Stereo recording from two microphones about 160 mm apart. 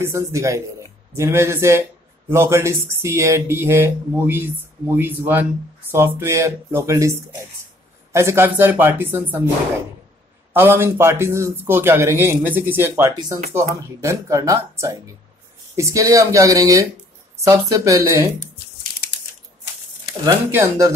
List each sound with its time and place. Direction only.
0.0 s speech: 20° right (ahead or behind)
10.5 s speech: 15° right (ahead or behind)
20.5 s speech: 20° right (ahead or behind)